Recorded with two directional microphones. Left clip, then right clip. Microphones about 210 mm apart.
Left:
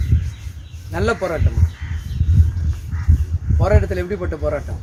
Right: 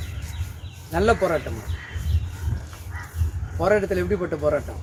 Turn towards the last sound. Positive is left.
turn(degrees=15)  # may be behind; listen again after turning